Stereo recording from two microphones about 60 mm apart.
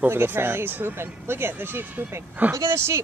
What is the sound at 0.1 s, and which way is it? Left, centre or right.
Speech, right.